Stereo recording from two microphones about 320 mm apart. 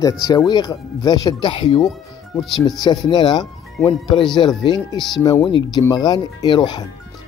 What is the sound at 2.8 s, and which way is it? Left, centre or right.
Speech, centre.